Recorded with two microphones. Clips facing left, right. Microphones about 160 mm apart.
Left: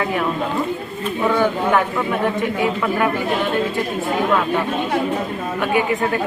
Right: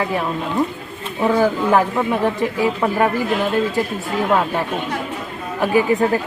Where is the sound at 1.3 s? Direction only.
35° right (ahead or behind).